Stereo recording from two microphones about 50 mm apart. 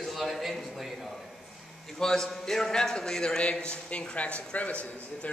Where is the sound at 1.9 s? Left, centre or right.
Centre.